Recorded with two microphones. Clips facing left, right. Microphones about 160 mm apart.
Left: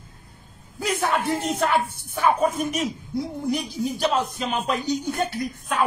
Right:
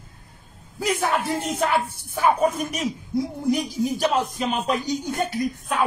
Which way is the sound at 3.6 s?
40° right (ahead or behind).